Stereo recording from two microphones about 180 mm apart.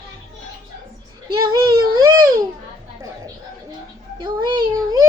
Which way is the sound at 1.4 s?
25° right (ahead or behind).